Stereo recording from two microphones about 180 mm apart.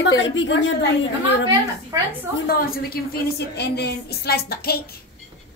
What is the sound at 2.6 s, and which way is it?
A woman's voice, 55° left (ahead or behind).